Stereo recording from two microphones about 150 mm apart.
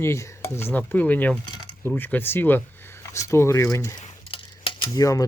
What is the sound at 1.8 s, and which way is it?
Speech, 10° left (ahead or behind).